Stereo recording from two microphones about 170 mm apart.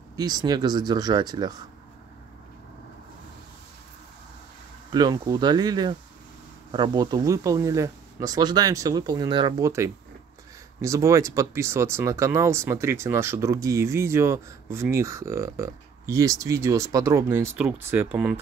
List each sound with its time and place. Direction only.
0.1 s speech: 20° right (ahead or behind)
4.9 s speech: 25° right (ahead or behind)
10.8 s speech: 20° right (ahead or behind)